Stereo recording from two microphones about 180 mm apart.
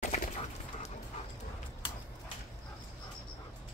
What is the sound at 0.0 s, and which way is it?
Dog, 40° left (ahead or behind).